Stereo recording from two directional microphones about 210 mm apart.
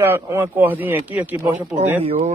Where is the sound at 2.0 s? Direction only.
30° right (ahead or behind).